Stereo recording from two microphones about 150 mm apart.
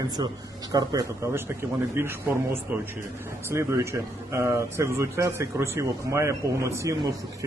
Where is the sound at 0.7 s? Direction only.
25° right (ahead or behind).